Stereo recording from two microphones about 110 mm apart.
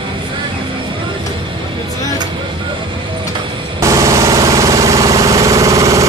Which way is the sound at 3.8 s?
30° right (ahead or behind).